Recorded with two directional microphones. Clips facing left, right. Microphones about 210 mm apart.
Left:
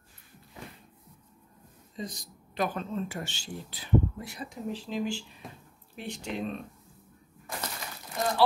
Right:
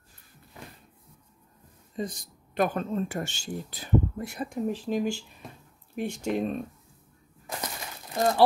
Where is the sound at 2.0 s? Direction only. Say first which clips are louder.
Right 5 dB; 55° right (ahead or behind).